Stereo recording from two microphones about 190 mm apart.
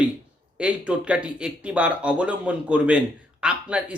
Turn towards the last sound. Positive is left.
turn(degrees=-5)  # may be behind; listen again after turning